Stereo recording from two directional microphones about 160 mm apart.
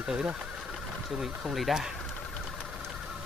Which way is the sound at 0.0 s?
5° right (ahead or behind).